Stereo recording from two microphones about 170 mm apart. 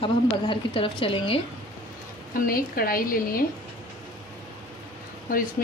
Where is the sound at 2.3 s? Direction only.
60° left (ahead or behind).